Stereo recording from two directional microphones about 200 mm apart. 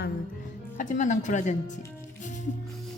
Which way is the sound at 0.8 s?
40° left (ahead or behind).